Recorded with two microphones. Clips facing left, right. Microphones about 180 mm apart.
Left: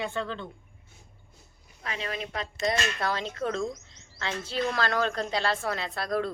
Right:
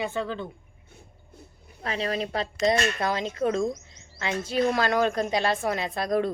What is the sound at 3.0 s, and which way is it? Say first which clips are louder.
Speech: right 4 dB; 15° right (ahead or behind).